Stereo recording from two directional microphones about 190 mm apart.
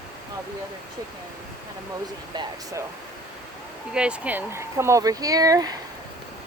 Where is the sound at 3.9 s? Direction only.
5° right (ahead or behind).